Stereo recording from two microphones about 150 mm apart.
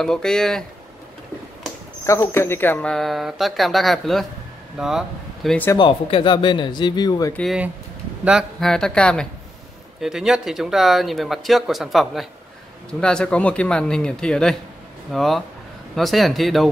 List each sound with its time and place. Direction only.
0.0 s speech: 5° left (ahead or behind)
2.0 s speech: 20° left (ahead or behind); by 5.6 s centre (ahead or behind)
5.8 s speech: 35° left (ahead or behind)
8.2 s speech: 5° right (ahead or behind)